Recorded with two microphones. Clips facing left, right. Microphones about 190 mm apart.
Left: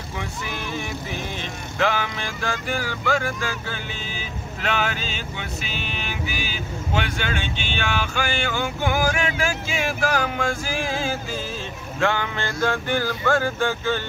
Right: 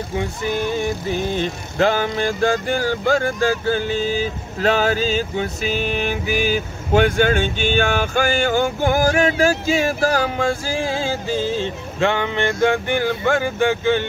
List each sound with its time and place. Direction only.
1.8 s speech: 35° right (ahead or behind); by 14.0 s 15° right (ahead or behind)